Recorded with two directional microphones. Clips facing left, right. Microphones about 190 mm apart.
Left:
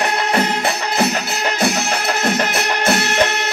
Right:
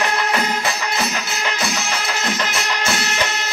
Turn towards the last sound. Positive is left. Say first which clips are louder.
# left 6 dB
turn(degrees=60)  # may be behind; listen again after turning